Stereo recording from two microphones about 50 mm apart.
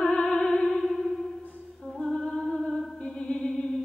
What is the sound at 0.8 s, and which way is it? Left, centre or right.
Music, centre.